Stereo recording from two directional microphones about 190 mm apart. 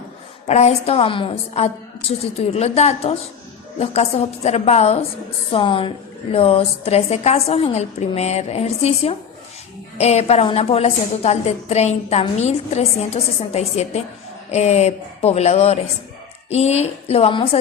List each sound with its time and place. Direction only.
0.4 s a woman's voice: 35° left (ahead or behind)